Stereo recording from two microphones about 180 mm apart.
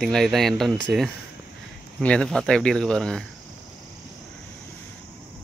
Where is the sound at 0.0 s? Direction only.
Centre (ahead or behind).